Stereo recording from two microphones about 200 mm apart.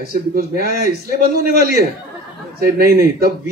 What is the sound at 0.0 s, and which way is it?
A man's voice, 45° right (ahead or behind).